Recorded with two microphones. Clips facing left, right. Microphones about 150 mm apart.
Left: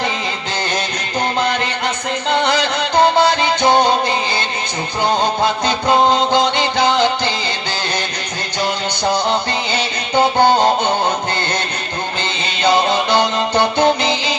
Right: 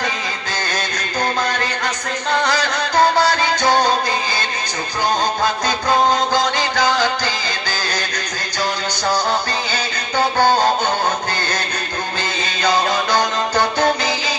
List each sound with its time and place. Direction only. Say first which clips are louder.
1.4 s music: left 3 dB; 20° left (ahead or behind)
5.4 s music: left 3 dB; 25° left (ahead or behind)
9.7 s music: left 6 dB; 20° left (ahead or behind)
12.6 s music: left 3 dB; 25° left (ahead or behind)